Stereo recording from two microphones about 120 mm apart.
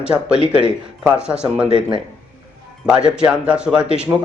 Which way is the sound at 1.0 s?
10° right (ahead or behind).